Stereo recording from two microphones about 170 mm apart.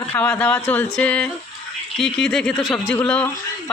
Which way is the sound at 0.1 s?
10° left (ahead or behind).